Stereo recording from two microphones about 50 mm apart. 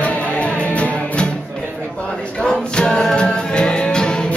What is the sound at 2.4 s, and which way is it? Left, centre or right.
Music, centre.